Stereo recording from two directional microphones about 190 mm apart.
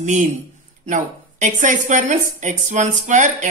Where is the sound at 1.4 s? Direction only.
40° right (ahead or behind).